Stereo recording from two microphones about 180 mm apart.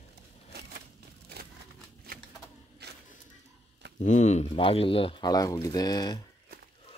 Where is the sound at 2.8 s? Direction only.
65° right (ahead or behind).